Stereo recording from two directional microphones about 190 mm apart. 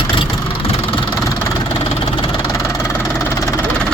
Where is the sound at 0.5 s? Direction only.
30° left (ahead or behind).